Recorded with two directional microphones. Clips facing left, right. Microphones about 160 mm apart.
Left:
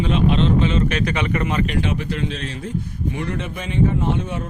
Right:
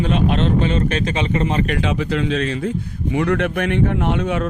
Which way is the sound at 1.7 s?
90° right.